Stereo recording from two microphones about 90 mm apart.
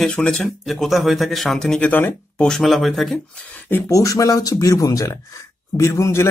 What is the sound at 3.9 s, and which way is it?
Speech, 40° left (ahead or behind).